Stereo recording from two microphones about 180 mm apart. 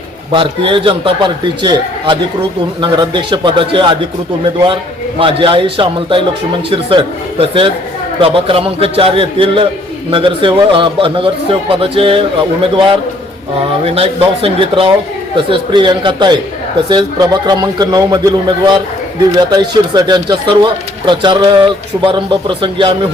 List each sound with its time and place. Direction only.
0.3 s a man's voice: 30° right (ahead or behind)
5.2 s a man's voice: 30° right (ahead or behind)